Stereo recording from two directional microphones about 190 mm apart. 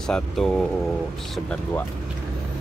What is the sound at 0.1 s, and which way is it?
Speech, centre (ahead or behind).